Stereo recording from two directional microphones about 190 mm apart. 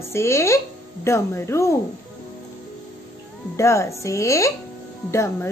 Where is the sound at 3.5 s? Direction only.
15° left (ahead or behind).